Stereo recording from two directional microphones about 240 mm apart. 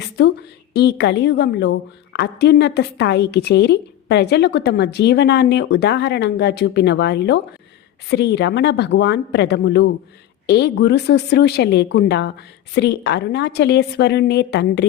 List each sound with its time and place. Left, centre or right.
0.7 s a woman's voice: left